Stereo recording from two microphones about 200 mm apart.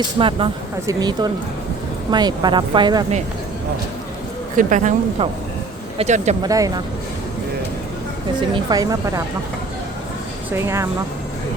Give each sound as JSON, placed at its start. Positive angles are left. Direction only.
{"t": 0.2, "sound": "speech", "side_deg": -25}
{"t": 4.5, "sound": "speech", "side_deg": -40}
{"t": 6.4, "sound": "speech", "side_deg": -20}
{"t": 8.5, "sound": "speech", "side_deg": -20}
{"t": 10.5, "sound": "speech", "side_deg": -15}